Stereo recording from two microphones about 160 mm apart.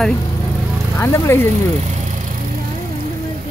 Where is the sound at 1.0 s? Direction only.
15° left (ahead or behind).